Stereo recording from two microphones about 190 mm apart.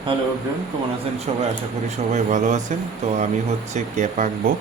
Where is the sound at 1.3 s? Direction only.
35° right (ahead or behind).